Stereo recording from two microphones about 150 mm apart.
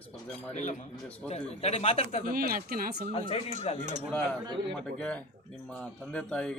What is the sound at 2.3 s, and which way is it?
Speech, 75° right (ahead or behind).